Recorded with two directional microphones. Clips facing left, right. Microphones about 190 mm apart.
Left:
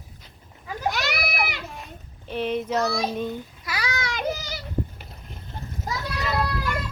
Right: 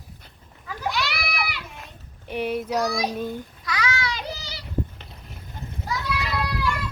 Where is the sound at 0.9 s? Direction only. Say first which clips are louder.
Left 1 dB; 45° left (ahead or behind).